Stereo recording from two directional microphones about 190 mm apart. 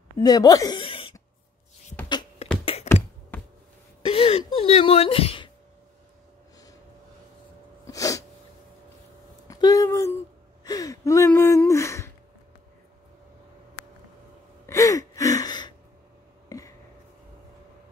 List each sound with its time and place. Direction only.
0.2 s speech: 20° left (ahead or behind)
2.0 s beatboxing: 25° left (ahead or behind)
2.6 s computer keyboard: 30° left (ahead or behind)
4.0 s a sound: 30° left (ahead or behind)
7.8 s sneeze: 15° left (ahead or behind)
9.5 s a sound: 20° left (ahead or behind)
10.6 s gasp: 20° left (ahead or behind)
14.7 s gasp: 15° left (ahead or behind)
16.4 s a sound: 15° left (ahead or behind)